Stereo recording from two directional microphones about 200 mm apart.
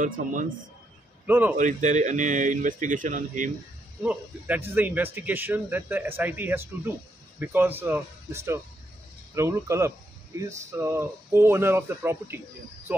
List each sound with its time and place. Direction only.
1.2 s speech: 10° right (ahead or behind)
1.6 s speech: 40° right (ahead or behind)
4.0 s speech: 10° right (ahead or behind)